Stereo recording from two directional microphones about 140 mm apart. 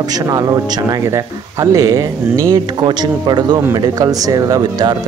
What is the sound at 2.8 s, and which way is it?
A man's voice, 30° right (ahead or behind).